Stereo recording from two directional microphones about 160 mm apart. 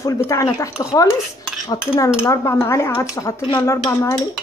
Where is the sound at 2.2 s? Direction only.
20° left (ahead or behind).